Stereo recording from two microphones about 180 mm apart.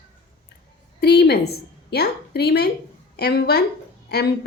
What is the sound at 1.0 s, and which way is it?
A woman's voice, 65° left (ahead or behind).